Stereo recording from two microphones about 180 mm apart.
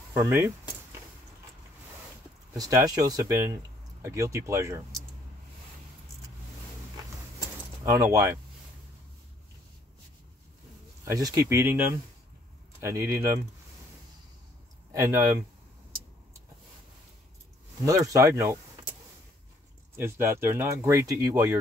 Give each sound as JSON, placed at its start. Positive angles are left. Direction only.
{"t": 0.1, "sound": "speech", "side_deg": -15}
{"t": 2.5, "sound": "speech", "side_deg": -20}
{"t": 7.8, "sound": "speech", "side_deg": -20}
{"t": 11.1, "sound": "speech", "side_deg": -20}
{"t": 12.8, "sound": "speech", "side_deg": -15}
{"t": 14.9, "sound": "speech", "side_deg": -15}
{"t": 17.8, "sound": "speech", "side_deg": -20}
{"t": 20.0, "sound": "speech", "side_deg": -15}